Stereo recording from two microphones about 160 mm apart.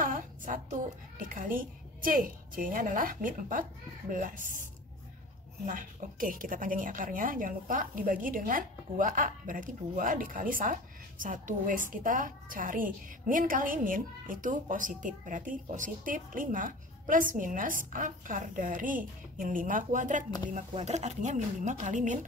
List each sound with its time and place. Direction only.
0.0 s a sound: 55° right (ahead or behind)
1.2 s speech: 60° right (ahead or behind)
5.7 s speech: 55° right (ahead or behind)